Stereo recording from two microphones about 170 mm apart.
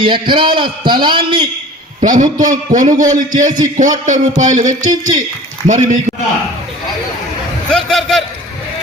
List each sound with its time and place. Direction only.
0.0 s a man's voice: 30° right (ahead or behind)
2.0 s a man's voice: 50° right (ahead or behind)
7.7 s a man's voice: 5° left (ahead or behind)